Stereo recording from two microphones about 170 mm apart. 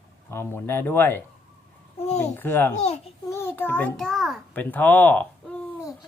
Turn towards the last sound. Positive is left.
turn(degrees=10)  # may be behind; listen again after turning